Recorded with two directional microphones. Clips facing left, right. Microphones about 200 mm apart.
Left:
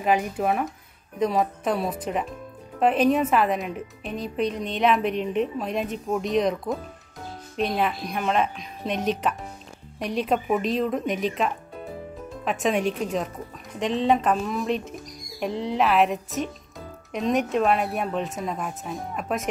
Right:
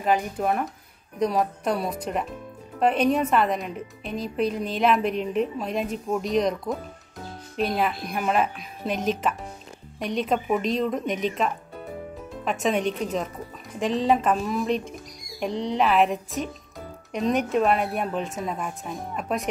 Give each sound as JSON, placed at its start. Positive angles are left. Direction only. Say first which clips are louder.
{"t": 0.0, "sound": "a woman's voice", "louder": "left 1 dB", "side_deg": 5}